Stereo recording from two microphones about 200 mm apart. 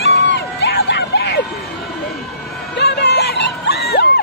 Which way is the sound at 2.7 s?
55° left (ahead or behind).